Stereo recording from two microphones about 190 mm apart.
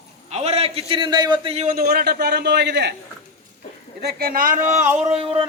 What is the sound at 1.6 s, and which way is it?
A man's voice, 50° right (ahead or behind).